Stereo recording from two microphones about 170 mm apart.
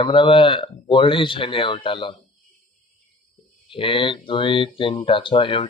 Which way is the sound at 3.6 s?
30° left (ahead or behind).